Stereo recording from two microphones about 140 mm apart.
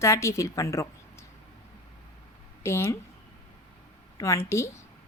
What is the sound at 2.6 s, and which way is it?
Speech, 20° left (ahead or behind).